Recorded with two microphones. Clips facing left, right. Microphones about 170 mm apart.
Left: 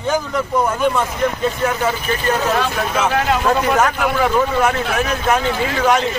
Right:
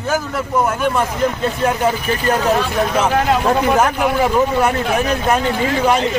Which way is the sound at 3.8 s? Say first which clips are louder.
Right 1 dB; 30° right (ahead or behind).